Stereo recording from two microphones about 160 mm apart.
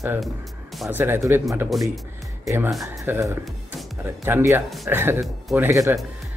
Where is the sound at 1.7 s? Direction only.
Centre (ahead or behind).